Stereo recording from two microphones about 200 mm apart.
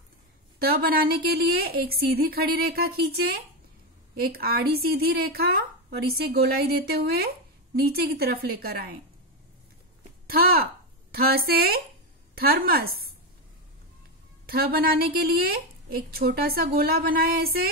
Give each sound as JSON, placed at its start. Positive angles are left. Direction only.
{"t": 0.6, "sound": "a woman's voice", "side_deg": -50}
{"t": 10.2, "sound": "a woman's voice", "side_deg": -50}
{"t": 14.4, "sound": "a woman's voice", "side_deg": -50}